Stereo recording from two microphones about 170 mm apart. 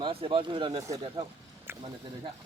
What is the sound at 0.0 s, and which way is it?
Speech, 30° right (ahead or behind).